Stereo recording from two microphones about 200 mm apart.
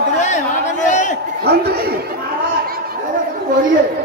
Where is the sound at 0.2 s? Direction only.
35° left (ahead or behind).